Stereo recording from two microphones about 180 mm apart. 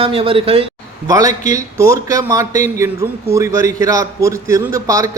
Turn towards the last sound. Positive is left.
turn(degrees=-20)  # may be behind; listen again after turning